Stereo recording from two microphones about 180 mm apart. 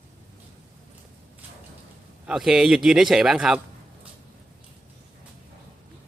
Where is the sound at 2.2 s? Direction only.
5° right (ahead or behind).